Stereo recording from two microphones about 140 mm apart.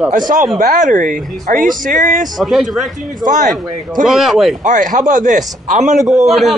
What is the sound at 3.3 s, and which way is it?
Speech, 65° right (ahead or behind).